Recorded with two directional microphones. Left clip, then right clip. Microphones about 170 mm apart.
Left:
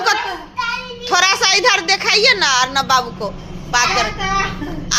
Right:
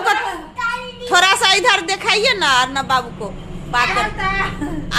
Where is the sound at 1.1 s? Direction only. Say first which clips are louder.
Right 1 dB; 25° right (ahead or behind).